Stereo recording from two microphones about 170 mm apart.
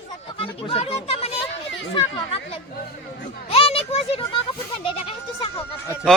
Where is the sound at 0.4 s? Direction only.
35° left (ahead or behind).